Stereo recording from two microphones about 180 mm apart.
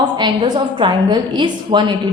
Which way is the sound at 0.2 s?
25° right (ahead or behind).